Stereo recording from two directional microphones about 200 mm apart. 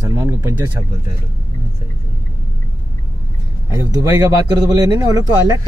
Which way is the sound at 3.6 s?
15° right (ahead or behind).